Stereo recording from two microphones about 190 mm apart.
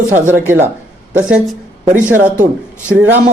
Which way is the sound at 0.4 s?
10° right (ahead or behind).